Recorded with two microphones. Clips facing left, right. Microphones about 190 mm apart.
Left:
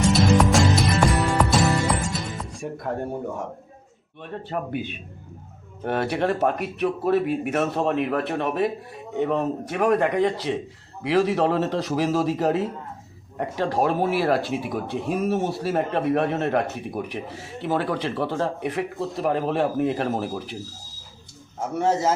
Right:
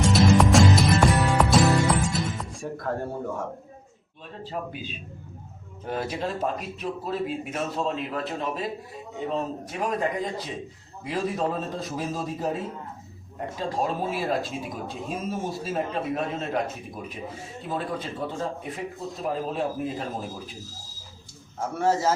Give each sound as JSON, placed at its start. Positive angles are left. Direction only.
{"t": 0.0, "sound": "music", "side_deg": 0}
{"t": 2.8, "sound": "a man's voice", "side_deg": 20}
{"t": 4.2, "sound": "speech", "side_deg": 60}
{"t": 21.8, "sound": "a man's voice", "side_deg": 20}